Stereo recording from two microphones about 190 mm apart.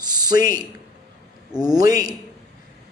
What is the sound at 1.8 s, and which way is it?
Speech, 20° right (ahead or behind).